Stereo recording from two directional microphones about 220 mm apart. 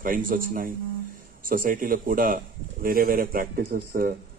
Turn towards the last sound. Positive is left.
turn(degrees=-40)  # may be behind; listen again after turning